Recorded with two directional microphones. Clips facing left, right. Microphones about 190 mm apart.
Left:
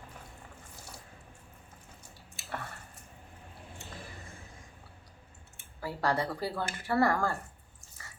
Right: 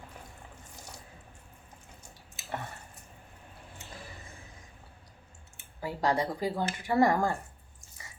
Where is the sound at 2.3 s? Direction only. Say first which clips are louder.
Right 2 dB; 20° right (ahead or behind).